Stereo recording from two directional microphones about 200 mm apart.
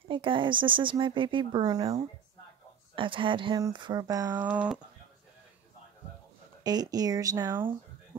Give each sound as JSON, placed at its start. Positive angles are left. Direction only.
{"t": 0.1, "sound": "speech", "side_deg": -25}
{"t": 3.0, "sound": "speech", "side_deg": -25}
{"t": 6.6, "sound": "speech", "side_deg": -20}